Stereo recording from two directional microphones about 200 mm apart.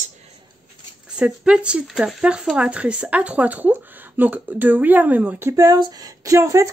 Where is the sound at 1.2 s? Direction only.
5° right (ahead or behind).